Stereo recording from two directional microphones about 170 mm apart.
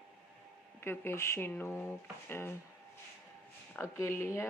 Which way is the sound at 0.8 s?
15° left (ahead or behind).